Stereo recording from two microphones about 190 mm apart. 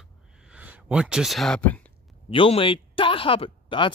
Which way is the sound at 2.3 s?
30° left (ahead or behind).